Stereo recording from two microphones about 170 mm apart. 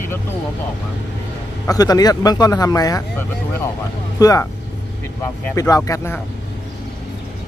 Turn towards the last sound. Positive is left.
turn(degrees=10)  # may be behind; listen again after turning